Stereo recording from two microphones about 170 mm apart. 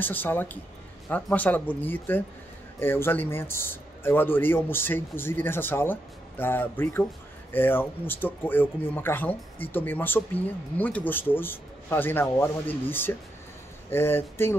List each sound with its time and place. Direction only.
0.0 s speech: 10° left (ahead or behind)
13.8 s speech: 15° left (ahead or behind)